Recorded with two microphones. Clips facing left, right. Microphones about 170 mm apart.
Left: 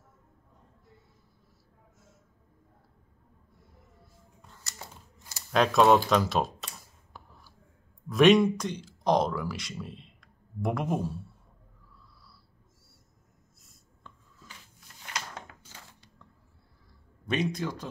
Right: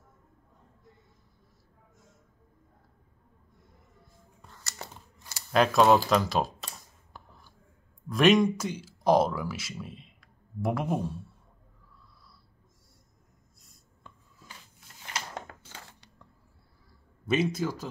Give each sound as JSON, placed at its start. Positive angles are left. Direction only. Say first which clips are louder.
{"t": 4.6, "sound": "scissors", "louder": "right 3 dB", "side_deg": -75}
{"t": 5.5, "sound": "computer keyboard", "louder": "even", "side_deg": 0}
{"t": 8.1, "sound": "speech", "louder": "left 2 dB", "side_deg": 0}
{"t": 15.5, "sound": "crushing", "louder": "right 5 dB", "side_deg": -45}
{"t": 17.3, "sound": "speech", "louder": "right 3 dB", "side_deg": -5}